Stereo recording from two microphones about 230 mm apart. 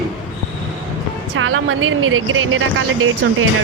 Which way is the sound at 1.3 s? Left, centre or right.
Right.